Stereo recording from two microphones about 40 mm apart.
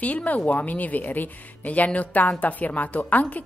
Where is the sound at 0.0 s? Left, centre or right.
Left.